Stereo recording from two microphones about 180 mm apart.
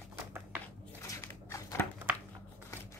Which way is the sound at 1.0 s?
15° left (ahead or behind).